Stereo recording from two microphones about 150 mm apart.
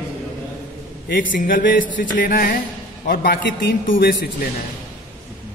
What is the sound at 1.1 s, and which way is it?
A man's voice, 70° left (ahead or behind).